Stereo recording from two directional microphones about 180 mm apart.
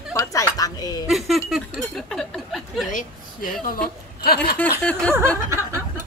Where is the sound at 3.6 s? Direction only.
50° left (ahead or behind).